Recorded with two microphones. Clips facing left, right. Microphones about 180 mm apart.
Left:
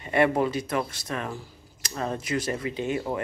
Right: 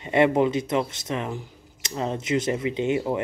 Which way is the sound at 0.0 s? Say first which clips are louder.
Right 3 dB; 20° right (ahead or behind).